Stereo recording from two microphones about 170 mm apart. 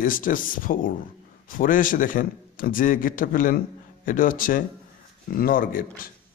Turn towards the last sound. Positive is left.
turn(degrees=55)  # may be behind; listen again after turning